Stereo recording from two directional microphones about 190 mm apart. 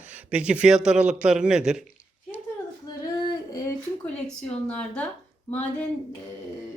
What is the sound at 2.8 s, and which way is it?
Female singing, 20° left (ahead or behind).